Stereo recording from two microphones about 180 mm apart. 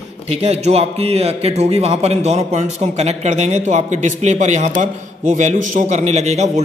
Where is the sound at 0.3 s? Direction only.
35° right (ahead or behind).